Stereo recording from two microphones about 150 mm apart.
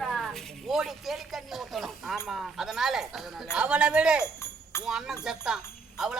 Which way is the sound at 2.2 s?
Centre (ahead or behind).